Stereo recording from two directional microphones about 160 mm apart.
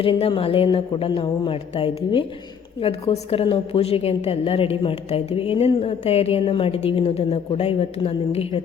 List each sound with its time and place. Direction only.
0.0 s a woman's voice: 35° left (ahead or behind)